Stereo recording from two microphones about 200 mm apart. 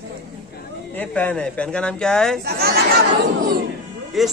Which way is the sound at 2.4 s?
50° right (ahead or behind).